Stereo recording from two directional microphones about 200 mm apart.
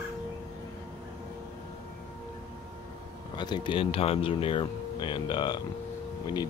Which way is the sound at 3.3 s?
20° left (ahead or behind).